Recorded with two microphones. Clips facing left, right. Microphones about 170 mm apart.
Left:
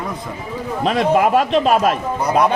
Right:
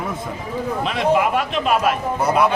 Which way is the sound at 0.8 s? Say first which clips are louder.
Left 4 dB; 40° left (ahead or behind).